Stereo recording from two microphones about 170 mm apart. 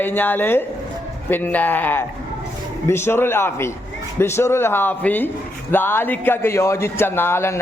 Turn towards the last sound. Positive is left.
turn(degrees=15)  # may be behind; listen again after turning